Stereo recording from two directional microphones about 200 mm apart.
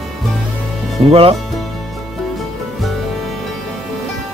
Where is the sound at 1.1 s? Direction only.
30° right (ahead or behind).